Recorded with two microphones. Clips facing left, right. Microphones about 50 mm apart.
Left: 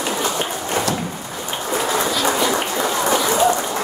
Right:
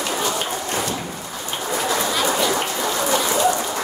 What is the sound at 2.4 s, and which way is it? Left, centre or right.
Rain, left.